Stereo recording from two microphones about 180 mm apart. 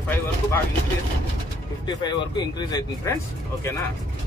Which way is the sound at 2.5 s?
20° left (ahead or behind).